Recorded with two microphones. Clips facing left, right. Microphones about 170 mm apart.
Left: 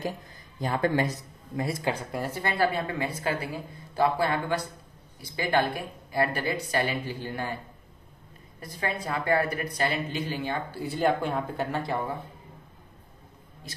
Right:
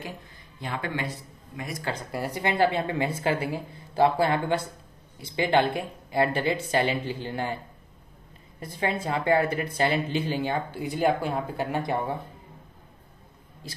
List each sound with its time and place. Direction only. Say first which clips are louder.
0.6 s speech: left 6 dB; 40° left (ahead or behind)
1.8 s speech: left 3 dB; 15° left (ahead or behind)
2.2 s speech: right 3 dB; 15° right (ahead or behind)
8.5 s speech: right 4 dB; 25° right (ahead or behind)
10.8 s speech: even; 15° right (ahead or behind)